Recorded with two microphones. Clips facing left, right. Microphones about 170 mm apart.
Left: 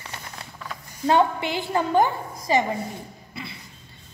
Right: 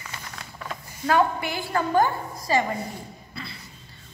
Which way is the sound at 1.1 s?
25° left (ahead or behind).